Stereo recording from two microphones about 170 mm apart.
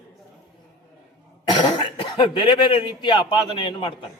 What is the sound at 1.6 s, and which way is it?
Speech, 25° left (ahead or behind).